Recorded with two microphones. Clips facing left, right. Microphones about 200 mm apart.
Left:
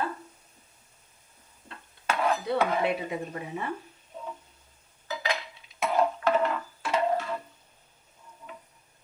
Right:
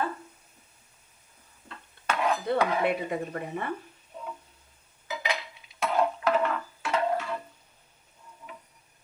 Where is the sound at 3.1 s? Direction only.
55° right (ahead or behind).